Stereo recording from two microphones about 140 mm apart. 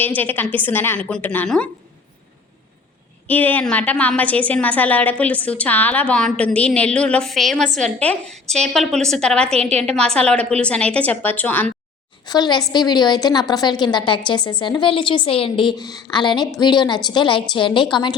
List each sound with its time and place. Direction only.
0.2 s a woman's voice: 15° left (ahead or behind)
3.2 s a woman's voice: 10° left (ahead or behind)
9.6 s a woman's voice: 50° right (ahead or behind)
9.8 s a woman's voice: 5° left (ahead or behind)
12.2 s a woman's voice: 30° left (ahead or behind)